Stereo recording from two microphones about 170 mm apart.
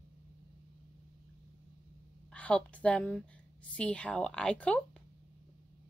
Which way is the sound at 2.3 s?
10° left (ahead or behind).